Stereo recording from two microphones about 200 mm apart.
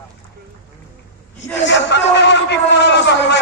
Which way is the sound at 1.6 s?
60° left (ahead or behind).